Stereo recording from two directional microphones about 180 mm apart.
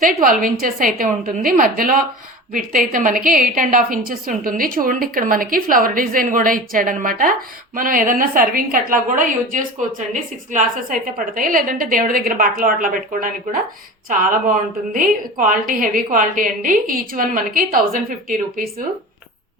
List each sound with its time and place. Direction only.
0.2 s a woman's voice: 50° right (ahead or behind)